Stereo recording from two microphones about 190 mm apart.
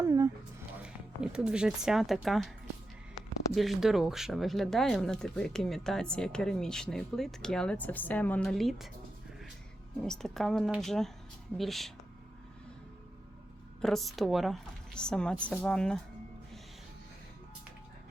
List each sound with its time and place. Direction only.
0.0 s a sound: 20° right (ahead or behind)
0.8 s speech: 5° right (ahead or behind)
3.5 s speech: centre (ahead or behind)
10.1 s speech: centre (ahead or behind)
13.8 s speech: centre (ahead or behind)